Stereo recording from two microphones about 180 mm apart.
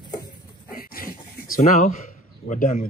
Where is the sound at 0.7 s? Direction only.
55° left (ahead or behind).